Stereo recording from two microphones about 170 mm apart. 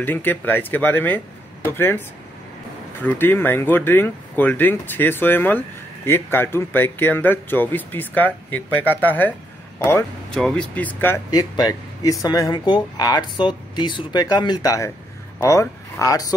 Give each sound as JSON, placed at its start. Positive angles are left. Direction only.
{"t": 0.0, "sound": "speech", "side_deg": 10}
{"t": 10.3, "sound": "speech", "side_deg": 5}
{"t": 11.2, "sound": "speech", "side_deg": 20}